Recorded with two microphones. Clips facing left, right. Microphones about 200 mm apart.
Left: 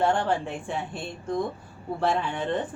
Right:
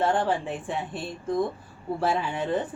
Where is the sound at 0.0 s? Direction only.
Centre (ahead or behind).